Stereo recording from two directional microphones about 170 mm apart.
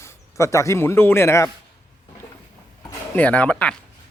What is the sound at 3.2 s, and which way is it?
Speech, 10° left (ahead or behind).